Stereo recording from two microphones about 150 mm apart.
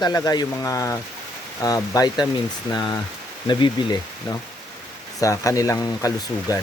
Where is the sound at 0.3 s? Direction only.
25° left (ahead or behind).